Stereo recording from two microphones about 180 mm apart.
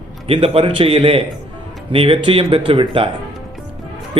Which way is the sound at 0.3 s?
30° right (ahead or behind).